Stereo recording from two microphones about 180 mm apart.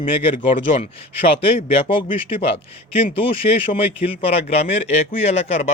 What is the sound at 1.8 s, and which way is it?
Speech, 30° left (ahead or behind).